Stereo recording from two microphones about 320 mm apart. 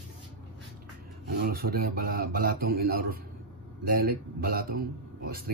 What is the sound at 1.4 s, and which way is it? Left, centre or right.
A man's voice, right.